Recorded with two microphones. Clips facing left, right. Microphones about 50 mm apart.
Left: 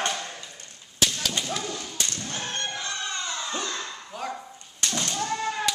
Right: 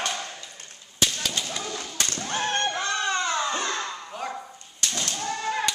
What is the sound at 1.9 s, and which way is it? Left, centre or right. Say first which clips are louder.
Thump: right 4 dB; right.